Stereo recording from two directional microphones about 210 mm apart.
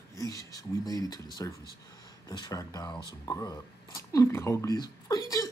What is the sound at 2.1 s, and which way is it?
Speech, 20° left (ahead or behind).